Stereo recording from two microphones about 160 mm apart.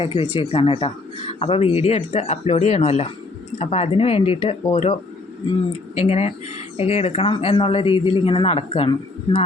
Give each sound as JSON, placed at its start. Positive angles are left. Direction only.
{"t": 0.0, "sound": "speech", "side_deg": 35}